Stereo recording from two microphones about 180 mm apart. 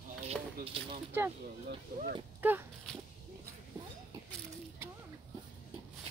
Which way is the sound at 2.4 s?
10° right (ahead or behind).